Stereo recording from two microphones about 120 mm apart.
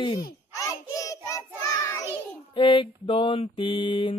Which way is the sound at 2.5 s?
45° left (ahead or behind).